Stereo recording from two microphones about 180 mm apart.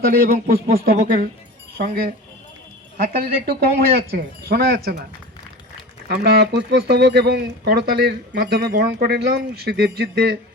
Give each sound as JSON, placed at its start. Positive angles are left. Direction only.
{"t": 0.1, "sound": "speech", "side_deg": -55}
{"t": 6.1, "sound": "speech", "side_deg": -60}